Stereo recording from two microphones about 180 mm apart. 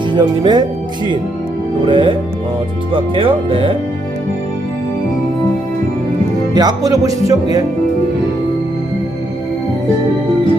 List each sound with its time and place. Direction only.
0.2 s speech: 25° right (ahead or behind)
6.5 s speech: 20° right (ahead or behind)